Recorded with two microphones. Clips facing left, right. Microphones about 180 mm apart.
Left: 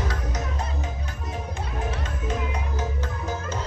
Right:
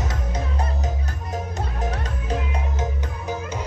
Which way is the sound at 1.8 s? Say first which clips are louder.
Even; 40° right (ahead or behind).